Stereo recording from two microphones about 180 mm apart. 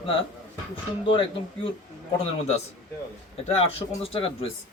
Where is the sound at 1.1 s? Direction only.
30° left (ahead or behind).